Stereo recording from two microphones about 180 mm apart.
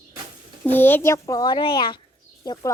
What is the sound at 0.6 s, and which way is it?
A child's voice, 10° left (ahead or behind).